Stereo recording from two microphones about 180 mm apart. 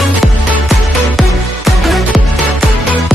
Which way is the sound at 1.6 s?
Centre (ahead or behind).